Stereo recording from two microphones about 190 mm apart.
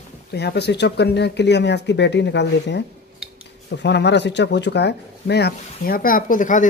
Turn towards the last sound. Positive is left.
turn(degrees=45)  # may be behind; listen again after turning